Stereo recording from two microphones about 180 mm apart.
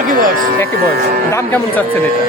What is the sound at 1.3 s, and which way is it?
Speech, 15° left (ahead or behind).